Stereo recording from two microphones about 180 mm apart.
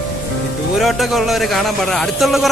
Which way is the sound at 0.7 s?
Centre (ahead or behind).